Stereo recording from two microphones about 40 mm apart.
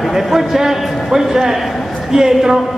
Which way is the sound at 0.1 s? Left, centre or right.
Centre.